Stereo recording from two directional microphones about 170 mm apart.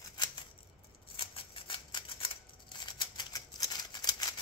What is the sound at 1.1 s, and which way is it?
Scissors, 30° left (ahead or behind).